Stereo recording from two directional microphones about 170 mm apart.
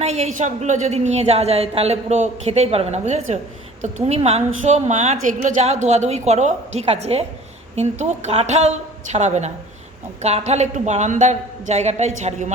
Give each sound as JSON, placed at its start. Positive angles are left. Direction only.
{"t": 0.0, "sound": "a woman's voice", "side_deg": -40}